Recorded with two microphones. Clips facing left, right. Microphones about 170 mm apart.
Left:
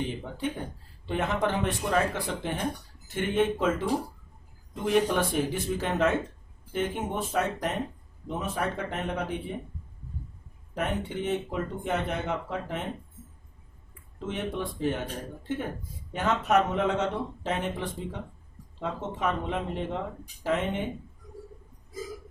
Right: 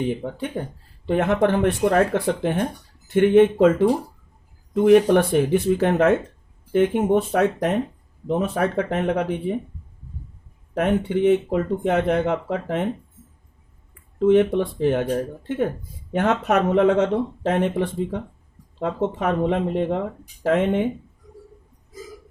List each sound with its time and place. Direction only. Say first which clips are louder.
1.0 s speech: right 9 dB; 60° right (ahead or behind)
10.8 s speech: right 10 dB; 65° right (ahead or behind)
14.2 s speech: right 16 dB; 65° right (ahead or behind)
16.1 s speech: right 5 dB; 65° right (ahead or behind)